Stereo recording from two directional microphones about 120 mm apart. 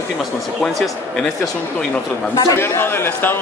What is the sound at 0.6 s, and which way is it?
Speech, 5° left (ahead or behind).